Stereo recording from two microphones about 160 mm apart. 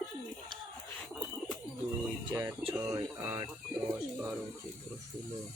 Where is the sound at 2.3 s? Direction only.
20° right (ahead or behind).